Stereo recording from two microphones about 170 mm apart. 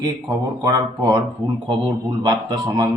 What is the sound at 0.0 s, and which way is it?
A man's voice, 25° right (ahead or behind).